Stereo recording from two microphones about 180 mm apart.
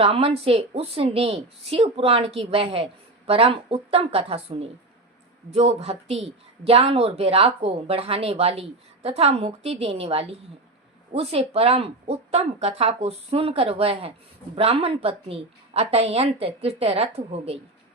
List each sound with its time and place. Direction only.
0.0 s a woman's voice: 30° right (ahead or behind)